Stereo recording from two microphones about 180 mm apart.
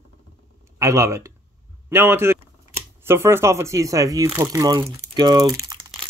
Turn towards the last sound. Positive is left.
turn(degrees=-20)  # may be behind; listen again after turning